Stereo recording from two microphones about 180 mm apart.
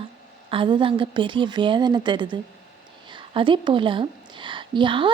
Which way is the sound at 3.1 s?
25° right (ahead or behind).